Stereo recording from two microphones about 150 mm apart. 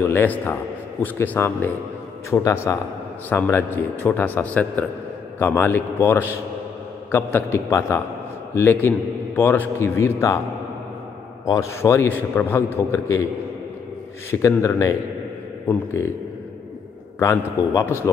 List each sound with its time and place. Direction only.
0.1 s a man's voice: 15° left (ahead or behind)
11.4 s a man's voice: 20° left (ahead or behind)
14.3 s speech: 20° left (ahead or behind)
17.2 s a man's voice: 15° left (ahead or behind)